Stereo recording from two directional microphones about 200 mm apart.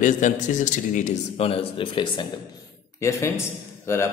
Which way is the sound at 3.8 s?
15° left (ahead or behind).